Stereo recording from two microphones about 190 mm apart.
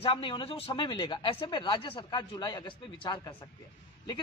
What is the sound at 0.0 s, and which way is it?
Speech, 25° left (ahead or behind).